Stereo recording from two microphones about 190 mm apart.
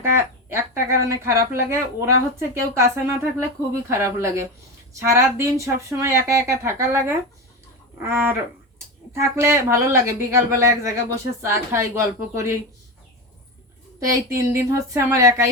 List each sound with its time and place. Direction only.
0.5 s speech: 15° right (ahead or behind)
14.1 s speech: 15° right (ahead or behind)